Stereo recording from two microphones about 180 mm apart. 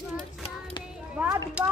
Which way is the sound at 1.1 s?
10° right (ahead or behind).